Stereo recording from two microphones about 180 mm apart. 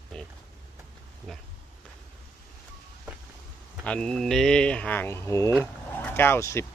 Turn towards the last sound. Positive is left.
turn(degrees=15)  # may be behind; listen again after turning